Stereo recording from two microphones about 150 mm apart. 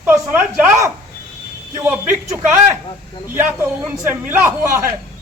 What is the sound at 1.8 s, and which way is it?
A man's voice, 15° right (ahead or behind).